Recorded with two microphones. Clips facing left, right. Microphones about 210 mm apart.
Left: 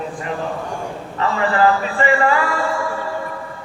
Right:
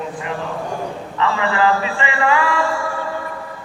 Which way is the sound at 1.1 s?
40° left (ahead or behind).